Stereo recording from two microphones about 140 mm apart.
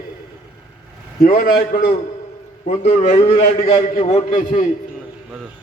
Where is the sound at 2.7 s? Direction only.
55° left (ahead or behind).